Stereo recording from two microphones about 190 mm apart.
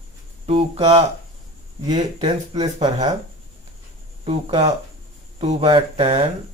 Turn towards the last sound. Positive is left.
turn(degrees=-30)  # may be behind; listen again after turning